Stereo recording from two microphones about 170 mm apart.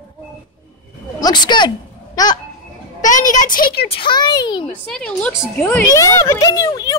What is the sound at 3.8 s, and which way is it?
Speech, 30° left (ahead or behind).